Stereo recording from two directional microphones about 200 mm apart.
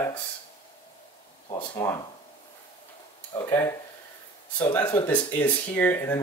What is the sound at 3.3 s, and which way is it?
Speech, 15° left (ahead or behind).